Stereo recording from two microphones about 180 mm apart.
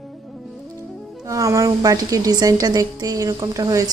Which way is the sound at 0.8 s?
20° right (ahead or behind).